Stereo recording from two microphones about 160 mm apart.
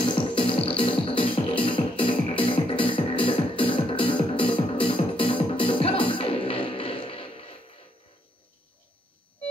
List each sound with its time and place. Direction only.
0.0 s music: 35° left (ahead or behind)